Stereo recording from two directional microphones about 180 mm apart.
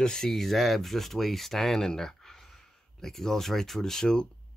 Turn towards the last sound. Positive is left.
turn(degrees=5)  # may be behind; listen again after turning